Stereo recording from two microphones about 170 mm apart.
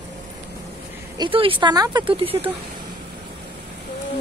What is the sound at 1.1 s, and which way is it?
Speech, 30° right (ahead or behind).